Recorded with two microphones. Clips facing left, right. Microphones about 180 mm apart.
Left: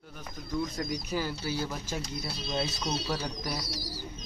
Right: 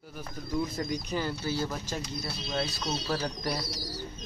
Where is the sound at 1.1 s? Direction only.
10° left (ahead or behind).